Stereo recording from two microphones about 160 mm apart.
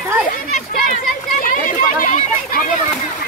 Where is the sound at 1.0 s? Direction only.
60° left (ahead or behind).